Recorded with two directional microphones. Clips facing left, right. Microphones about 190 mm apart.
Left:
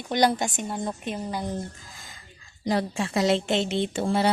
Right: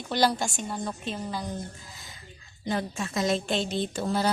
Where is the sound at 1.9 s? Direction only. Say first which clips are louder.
Left 1 dB; 50° left (ahead or behind).